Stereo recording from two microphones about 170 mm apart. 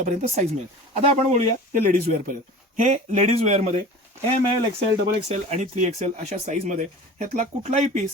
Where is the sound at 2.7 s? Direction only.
45° right (ahead or behind).